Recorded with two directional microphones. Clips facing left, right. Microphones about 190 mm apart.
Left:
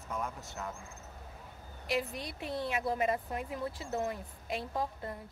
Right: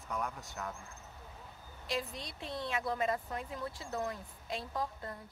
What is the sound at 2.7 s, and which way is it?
A woman's voice, 20° left (ahead or behind).